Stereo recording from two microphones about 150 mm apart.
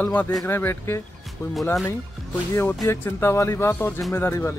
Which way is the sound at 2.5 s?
15° left (ahead or behind).